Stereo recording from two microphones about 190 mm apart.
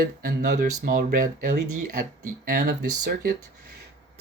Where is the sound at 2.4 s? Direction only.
55° right (ahead or behind).